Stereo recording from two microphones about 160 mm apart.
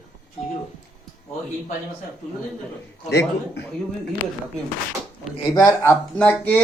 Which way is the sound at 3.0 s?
90° left.